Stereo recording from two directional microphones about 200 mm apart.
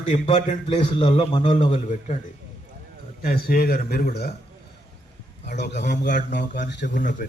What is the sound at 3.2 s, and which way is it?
A man's voice, 50° left (ahead or behind).